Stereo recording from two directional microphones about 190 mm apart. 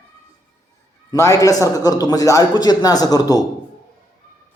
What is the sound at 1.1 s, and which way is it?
A man's voice, 15° left (ahead or behind).